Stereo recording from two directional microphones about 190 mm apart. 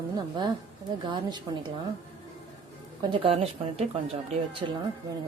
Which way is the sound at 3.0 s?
25° right (ahead or behind).